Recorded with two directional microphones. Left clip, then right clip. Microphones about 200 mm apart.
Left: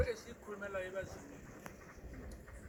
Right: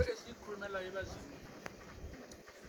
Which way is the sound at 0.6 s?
30° left (ahead or behind).